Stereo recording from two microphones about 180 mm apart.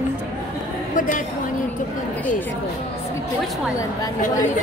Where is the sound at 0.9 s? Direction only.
50° left (ahead or behind).